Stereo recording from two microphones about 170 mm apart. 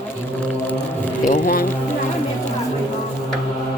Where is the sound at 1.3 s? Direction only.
55° left (ahead or behind).